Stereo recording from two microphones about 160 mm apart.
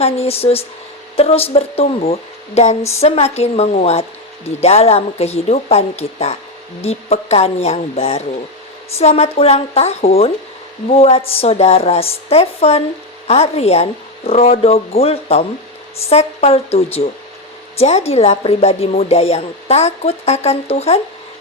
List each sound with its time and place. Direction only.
0.0 s speech: 40° left (ahead or behind)